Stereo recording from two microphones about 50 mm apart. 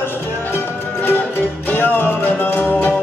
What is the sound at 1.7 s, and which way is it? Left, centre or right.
Music, left.